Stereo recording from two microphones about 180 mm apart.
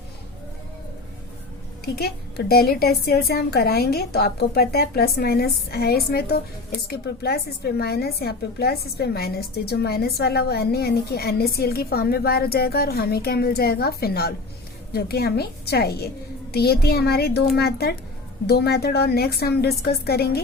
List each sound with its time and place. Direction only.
2.0 s a woman's voice: 60° left (ahead or behind)